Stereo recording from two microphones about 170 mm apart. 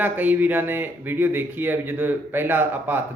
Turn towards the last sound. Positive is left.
turn(degrees=-10)  # may be behind; listen again after turning